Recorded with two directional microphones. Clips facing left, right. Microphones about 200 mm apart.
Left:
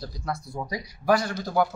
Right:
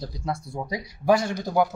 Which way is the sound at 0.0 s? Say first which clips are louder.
Right 2 dB; 25° right (ahead or behind).